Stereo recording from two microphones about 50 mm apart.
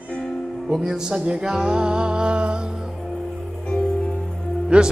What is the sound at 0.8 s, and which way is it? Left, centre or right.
Music, centre.